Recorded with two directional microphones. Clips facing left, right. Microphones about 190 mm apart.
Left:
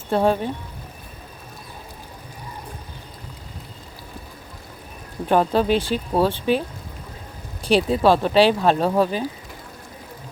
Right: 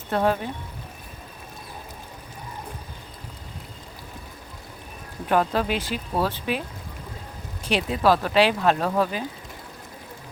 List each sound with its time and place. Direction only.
0.1 s speech: 30° left (ahead or behind)
5.3 s speech: 30° left (ahead or behind)
7.6 s speech: 35° left (ahead or behind)